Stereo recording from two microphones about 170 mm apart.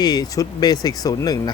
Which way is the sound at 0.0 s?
25° left (ahead or behind).